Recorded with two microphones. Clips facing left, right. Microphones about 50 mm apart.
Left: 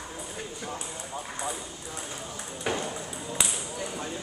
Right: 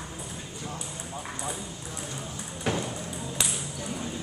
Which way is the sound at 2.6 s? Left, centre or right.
Centre.